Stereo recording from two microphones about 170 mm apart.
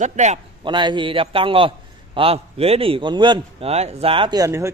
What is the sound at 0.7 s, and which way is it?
A man's voice, 25° right (ahead or behind).